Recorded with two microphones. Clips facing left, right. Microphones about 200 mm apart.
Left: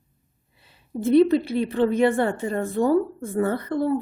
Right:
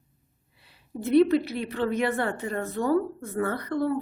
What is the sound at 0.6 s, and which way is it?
A woman's voice, 25° left (ahead or behind).